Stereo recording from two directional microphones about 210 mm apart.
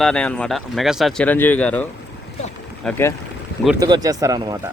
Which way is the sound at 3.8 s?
20° right (ahead or behind).